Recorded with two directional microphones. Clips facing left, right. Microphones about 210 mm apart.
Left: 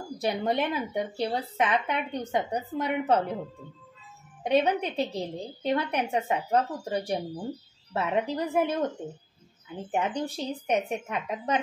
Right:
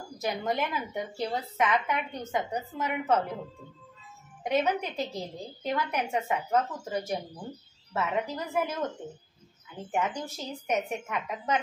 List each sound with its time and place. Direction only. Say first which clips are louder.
0.2 s a woman's voice: left 3 dB; 30° left (ahead or behind)
4.4 s a woman's voice: left 3 dB; 35° left (ahead or behind)